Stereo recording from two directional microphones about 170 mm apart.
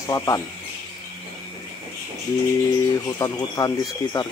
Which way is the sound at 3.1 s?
20° left (ahead or behind).